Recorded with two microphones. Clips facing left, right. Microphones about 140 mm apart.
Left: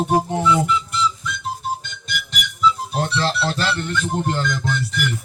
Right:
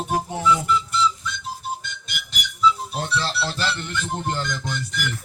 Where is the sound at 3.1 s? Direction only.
60° left (ahead or behind).